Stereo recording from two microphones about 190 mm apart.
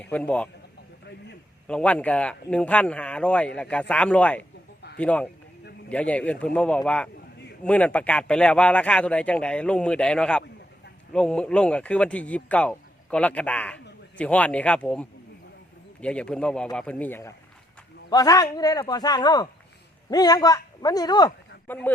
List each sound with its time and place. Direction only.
0.0 s speech: 5° left (ahead or behind)
1.6 s a man's voice: 5° left (ahead or behind)
21.7 s speech: 10° left (ahead or behind)